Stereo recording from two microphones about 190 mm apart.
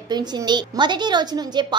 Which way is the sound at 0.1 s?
20° right (ahead or behind).